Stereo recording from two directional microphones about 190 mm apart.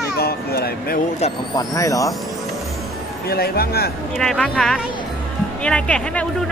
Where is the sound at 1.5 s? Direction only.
20° left (ahead or behind).